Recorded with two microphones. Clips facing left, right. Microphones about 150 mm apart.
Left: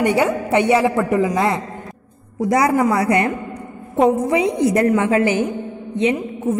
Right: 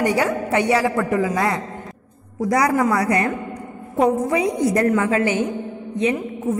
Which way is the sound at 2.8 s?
25° left (ahead or behind).